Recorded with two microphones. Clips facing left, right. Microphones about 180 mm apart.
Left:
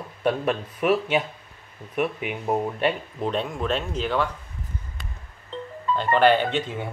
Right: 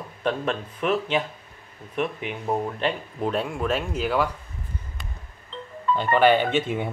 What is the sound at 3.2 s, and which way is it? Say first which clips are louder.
Speech: right 1 dB; 5° right (ahead or behind).